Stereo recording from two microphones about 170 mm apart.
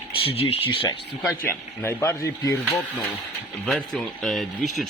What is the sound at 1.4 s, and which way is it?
Speech, 15° left (ahead or behind).